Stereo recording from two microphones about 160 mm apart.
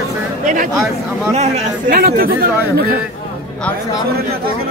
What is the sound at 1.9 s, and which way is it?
Speech, 70° right (ahead or behind).